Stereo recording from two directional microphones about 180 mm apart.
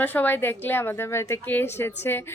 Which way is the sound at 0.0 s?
10° left (ahead or behind).